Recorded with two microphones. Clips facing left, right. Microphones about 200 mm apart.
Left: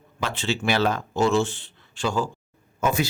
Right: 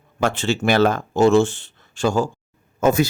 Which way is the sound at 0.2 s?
45° right (ahead or behind).